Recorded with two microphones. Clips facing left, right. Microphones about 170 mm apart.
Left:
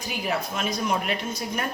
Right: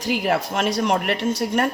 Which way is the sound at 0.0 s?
80° right.